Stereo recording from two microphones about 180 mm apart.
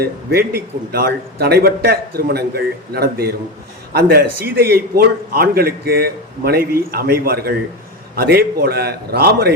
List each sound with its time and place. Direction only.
0.0 s a man's voice: 60° right (ahead or behind)